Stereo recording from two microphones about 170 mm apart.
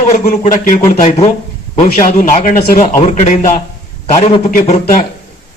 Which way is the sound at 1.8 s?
50° left (ahead or behind).